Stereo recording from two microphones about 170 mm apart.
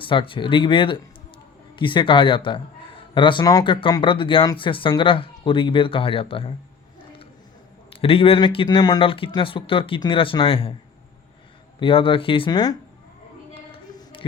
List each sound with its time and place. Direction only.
0.0 s speech: 30° left (ahead or behind)
7.9 s speech: 35° left (ahead or behind)
11.8 s speech: 30° left (ahead or behind)
13.5 s a sound: 30° left (ahead or behind)